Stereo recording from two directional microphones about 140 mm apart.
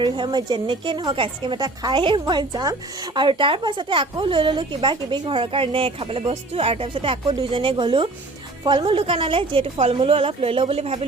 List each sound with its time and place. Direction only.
0.0 s a woman's voice: 30° right (ahead or behind)